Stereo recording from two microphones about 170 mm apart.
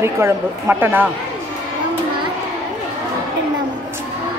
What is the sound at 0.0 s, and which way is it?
A woman's voice, 15° right (ahead or behind).